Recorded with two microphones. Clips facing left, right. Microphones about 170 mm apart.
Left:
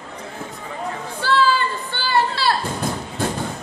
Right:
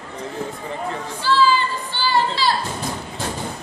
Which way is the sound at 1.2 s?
55° left (ahead or behind).